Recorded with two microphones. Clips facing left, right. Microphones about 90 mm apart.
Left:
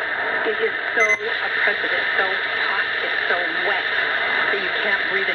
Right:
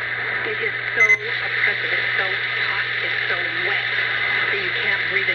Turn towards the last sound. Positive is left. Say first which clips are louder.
# left 2 dB
turn(degrees=35)  # may be behind; listen again after turning